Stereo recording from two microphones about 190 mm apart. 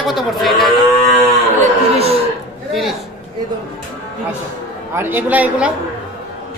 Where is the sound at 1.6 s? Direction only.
35° right (ahead or behind).